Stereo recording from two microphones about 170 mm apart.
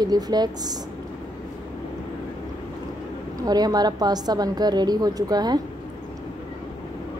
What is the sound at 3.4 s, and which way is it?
A woman's voice, 25° right (ahead or behind).